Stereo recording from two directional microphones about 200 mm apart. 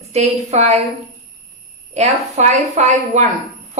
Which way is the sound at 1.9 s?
35° right (ahead or behind).